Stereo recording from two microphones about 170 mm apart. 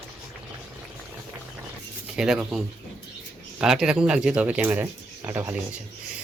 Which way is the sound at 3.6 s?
5° right (ahead or behind).